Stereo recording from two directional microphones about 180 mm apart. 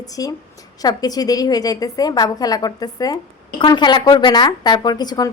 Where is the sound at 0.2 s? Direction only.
20° left (ahead or behind).